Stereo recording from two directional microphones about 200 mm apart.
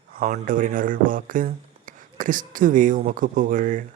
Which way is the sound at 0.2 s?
40° right (ahead or behind).